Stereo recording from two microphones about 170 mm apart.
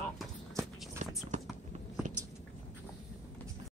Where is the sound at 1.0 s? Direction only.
45° right (ahead or behind).